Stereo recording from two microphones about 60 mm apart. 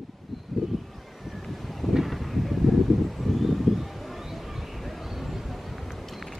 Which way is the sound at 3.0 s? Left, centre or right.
Centre.